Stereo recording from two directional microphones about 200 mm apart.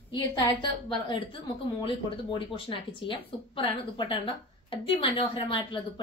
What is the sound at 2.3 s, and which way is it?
Speech, 25° left (ahead or behind).